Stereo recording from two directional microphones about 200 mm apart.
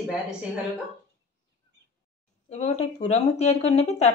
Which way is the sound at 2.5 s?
35° left (ahead or behind).